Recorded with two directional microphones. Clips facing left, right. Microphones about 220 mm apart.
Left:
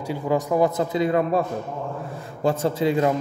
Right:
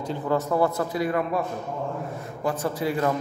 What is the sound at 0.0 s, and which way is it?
A man's voice, 10° left (ahead or behind).